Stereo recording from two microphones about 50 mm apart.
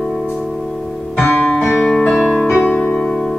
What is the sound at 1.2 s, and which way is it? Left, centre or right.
Music, left.